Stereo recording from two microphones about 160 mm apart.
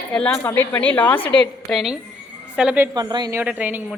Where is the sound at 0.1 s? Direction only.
10° left (ahead or behind).